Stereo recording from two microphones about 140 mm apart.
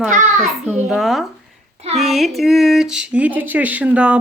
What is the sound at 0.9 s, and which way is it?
Speech, centre (ahead or behind).